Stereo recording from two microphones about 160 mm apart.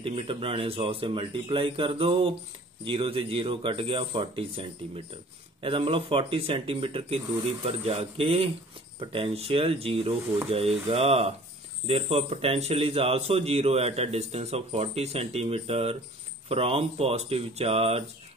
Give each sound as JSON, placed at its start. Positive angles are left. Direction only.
{"t": 0.0, "sound": "speech", "side_deg": -35}